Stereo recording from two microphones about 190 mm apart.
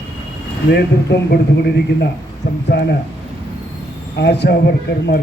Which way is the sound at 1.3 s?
55° left (ahead or behind).